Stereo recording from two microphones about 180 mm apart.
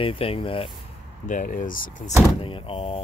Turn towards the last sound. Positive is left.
turn(degrees=30)  # may be behind; listen again after turning